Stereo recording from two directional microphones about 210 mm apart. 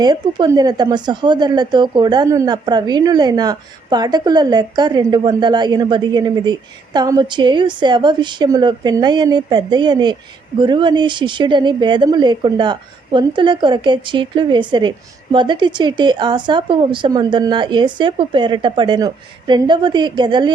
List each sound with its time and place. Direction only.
0.0 s speech: 20° right (ahead or behind)